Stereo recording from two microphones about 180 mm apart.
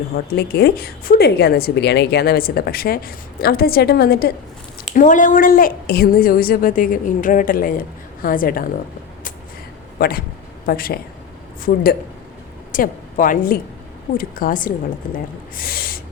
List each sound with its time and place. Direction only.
0.3 s a woman's voice: 60° left (ahead or behind)
4.9 s a woman's voice: 45° left (ahead or behind)
10.0 s a woman's voice: 55° left (ahead or behind)